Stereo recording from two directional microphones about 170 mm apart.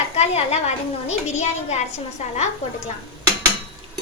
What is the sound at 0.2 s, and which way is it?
A woman's voice, 40° left (ahead or behind).